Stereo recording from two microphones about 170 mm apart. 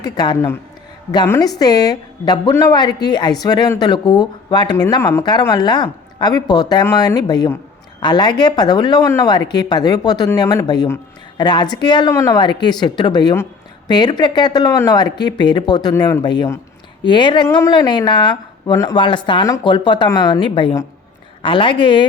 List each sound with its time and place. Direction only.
0.0 s a woman's voice: 25° left (ahead or behind)